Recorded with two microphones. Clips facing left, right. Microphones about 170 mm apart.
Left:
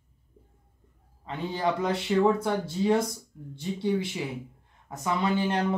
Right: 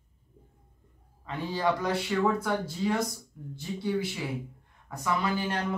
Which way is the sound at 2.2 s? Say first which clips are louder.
Left 3 dB; 25° left (ahead or behind).